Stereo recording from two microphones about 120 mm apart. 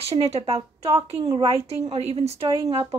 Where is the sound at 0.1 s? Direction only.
60° right (ahead or behind).